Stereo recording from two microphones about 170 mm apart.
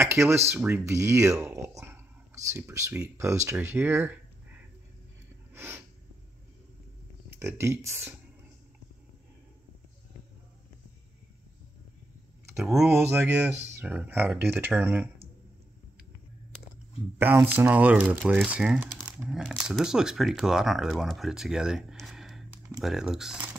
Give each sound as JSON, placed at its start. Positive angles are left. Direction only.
{"t": 0.0, "sound": "a sound", "side_deg": -15}
{"t": 0.5, "sound": "speech", "side_deg": -10}
{"t": 5.5, "sound": "snort", "side_deg": -10}
{"t": 7.3, "sound": "speech", "side_deg": -15}
{"t": 12.5, "sound": "speech", "side_deg": 0}
{"t": 17.2, "sound": "speech", "side_deg": -10}